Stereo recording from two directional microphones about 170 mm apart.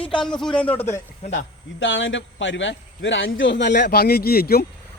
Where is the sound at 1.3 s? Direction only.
90° left.